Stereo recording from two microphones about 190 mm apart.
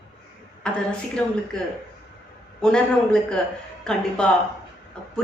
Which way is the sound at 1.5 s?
5° left (ahead or behind).